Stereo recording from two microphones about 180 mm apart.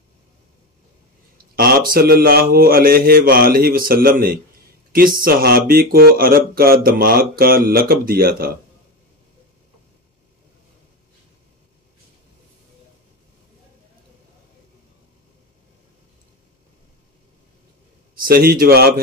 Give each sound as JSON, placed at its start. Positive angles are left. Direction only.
{"t": 1.5, "sound": "speech", "side_deg": -55}
{"t": 18.1, "sound": "a man's voice", "side_deg": -55}